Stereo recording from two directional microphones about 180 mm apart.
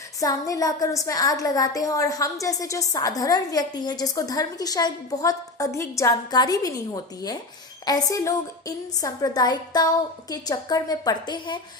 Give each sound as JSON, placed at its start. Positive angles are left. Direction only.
{"t": 0.2, "sound": "a woman's voice", "side_deg": 20}